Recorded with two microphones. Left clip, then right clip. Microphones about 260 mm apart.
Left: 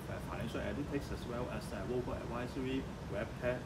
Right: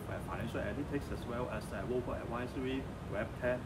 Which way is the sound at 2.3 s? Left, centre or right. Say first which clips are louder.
Even; centre.